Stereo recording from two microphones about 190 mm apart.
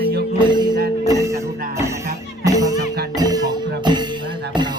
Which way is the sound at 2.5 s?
20° right (ahead or behind).